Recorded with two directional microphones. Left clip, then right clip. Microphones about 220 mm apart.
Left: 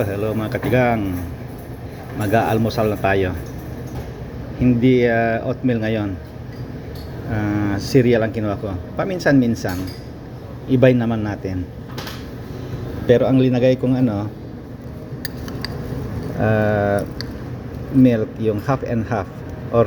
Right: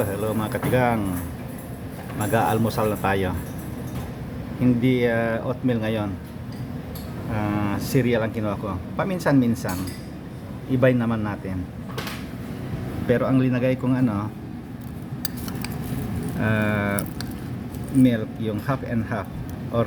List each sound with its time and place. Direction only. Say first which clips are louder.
0.0 s speech: left 3 dB; centre (ahead or behind)
2.1 s speech: left 4 dB; centre (ahead or behind)
4.8 s speech: left 7 dB; centre (ahead or behind)
7.3 s a man's voice: left 4 dB; 5° left (ahead or behind)
13.1 s speech: left 7 dB; 5° left (ahead or behind)
16.4 s speech: left 7 dB; 5° left (ahead or behind)
18.0 s speech: left 6 dB; 5° right (ahead or behind)